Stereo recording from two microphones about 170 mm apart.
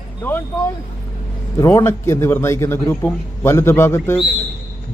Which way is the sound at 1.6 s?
15° left (ahead or behind).